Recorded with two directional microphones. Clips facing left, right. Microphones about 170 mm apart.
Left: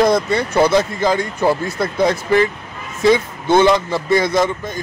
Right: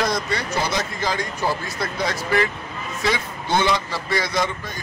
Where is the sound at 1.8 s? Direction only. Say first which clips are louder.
Left 8 dB; 25° left (ahead or behind).